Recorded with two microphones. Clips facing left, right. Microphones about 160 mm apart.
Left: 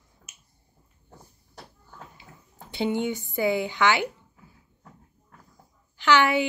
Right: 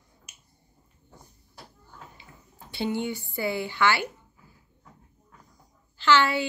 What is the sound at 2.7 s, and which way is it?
Speech, 15° left (ahead or behind).